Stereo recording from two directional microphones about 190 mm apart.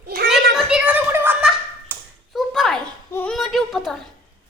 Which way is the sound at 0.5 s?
5° right (ahead or behind).